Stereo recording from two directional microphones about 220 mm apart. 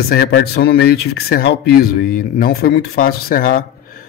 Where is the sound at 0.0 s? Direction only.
45° left (ahead or behind).